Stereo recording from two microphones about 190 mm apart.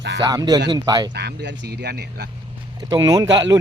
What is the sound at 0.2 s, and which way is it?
Speech, 20° right (ahead or behind).